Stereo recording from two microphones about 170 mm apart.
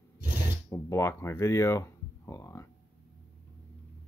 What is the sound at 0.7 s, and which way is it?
Speech, 15° left (ahead or behind).